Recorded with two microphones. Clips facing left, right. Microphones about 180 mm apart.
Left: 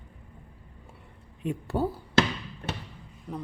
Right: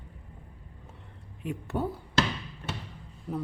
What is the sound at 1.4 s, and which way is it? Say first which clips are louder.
Speech: left 3 dB; 30° left (ahead or behind).